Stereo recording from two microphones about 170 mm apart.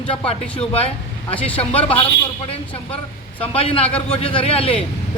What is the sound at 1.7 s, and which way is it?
Speech, 30° left (ahead or behind).